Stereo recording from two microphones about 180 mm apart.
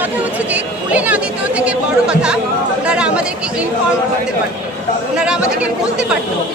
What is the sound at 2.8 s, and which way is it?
Chatter, 5° right (ahead or behind).